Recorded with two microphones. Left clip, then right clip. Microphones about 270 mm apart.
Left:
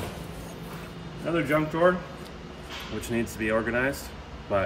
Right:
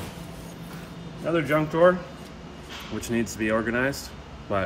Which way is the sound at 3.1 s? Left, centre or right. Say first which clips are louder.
Right 1 dB; right.